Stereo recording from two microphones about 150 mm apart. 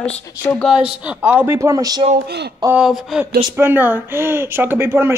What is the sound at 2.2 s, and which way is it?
Speech, 90° right.